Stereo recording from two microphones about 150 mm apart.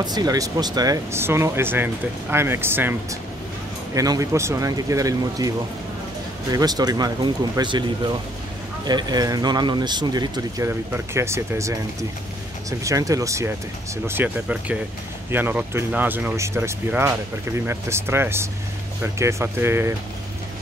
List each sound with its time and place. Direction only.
0.0 s speech: 25° right (ahead or behind)
6.5 s speech: 25° right (ahead or behind)